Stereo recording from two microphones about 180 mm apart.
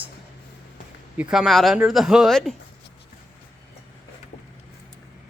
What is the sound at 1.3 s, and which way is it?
Speech, centre (ahead or behind).